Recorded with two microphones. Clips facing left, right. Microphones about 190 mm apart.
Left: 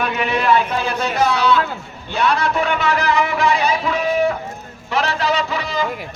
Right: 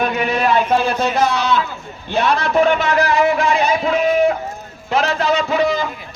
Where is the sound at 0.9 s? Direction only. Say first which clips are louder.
Right 1 dB; 65° left (ahead or behind).